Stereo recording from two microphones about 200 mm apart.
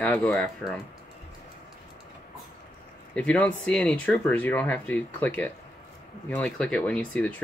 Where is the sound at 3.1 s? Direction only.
5° left (ahead or behind).